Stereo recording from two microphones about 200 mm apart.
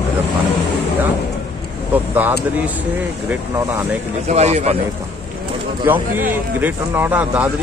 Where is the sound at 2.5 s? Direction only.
5° right (ahead or behind).